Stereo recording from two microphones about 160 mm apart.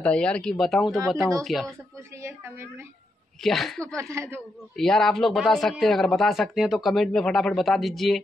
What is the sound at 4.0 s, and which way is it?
Speech, 15° right (ahead or behind).